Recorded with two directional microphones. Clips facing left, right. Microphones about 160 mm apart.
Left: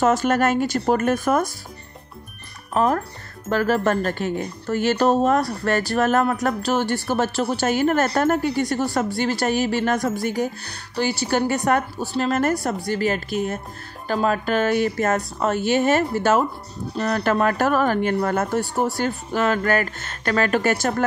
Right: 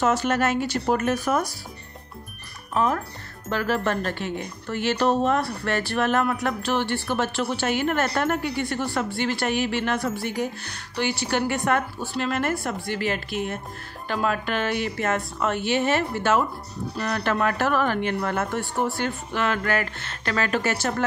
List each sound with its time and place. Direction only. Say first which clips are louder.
0.0 s speech: left 4 dB; 45° left (ahead or behind)
2.7 s speech: left 3 dB; 40° left (ahead or behind)
16.9 s speech: left 5 dB; 30° left (ahead or behind)
17.2 s speech: left 3 dB; 40° left (ahead or behind)